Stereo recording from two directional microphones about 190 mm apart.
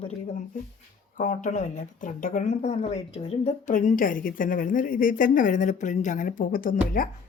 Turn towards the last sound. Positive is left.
turn(degrees=45)  # may be behind; listen again after turning